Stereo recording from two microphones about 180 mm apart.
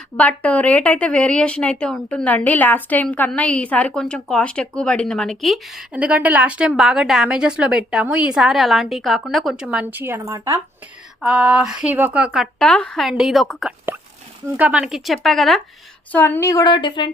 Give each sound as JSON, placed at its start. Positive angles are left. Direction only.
{"t": 0.2, "sound": "a woman's voice", "side_deg": 5}
{"t": 11.2, "sound": "a woman's voice", "side_deg": -5}